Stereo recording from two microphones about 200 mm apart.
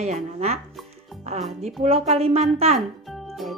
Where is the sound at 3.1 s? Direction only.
Centre (ahead or behind).